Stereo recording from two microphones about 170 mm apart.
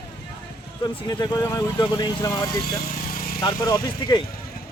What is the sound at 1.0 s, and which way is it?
Speech, 20° left (ahead or behind).